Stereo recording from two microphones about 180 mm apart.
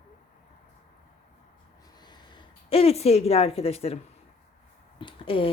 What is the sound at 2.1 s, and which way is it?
Speech, 25° left (ahead or behind).